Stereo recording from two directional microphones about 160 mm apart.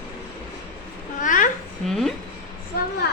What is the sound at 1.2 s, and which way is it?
Babbling, 55° left (ahead or behind).